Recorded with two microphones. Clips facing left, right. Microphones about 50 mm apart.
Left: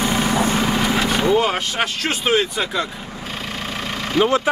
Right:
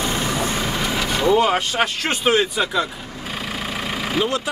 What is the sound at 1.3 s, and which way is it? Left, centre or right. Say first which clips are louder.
Speech: right 1 dB; centre.